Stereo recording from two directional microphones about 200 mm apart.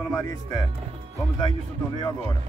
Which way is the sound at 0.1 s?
15° left (ahead or behind).